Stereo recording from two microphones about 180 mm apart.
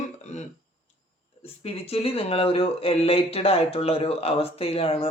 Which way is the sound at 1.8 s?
35° left (ahead or behind).